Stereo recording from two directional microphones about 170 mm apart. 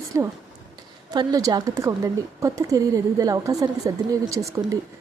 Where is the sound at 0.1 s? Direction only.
15° right (ahead or behind).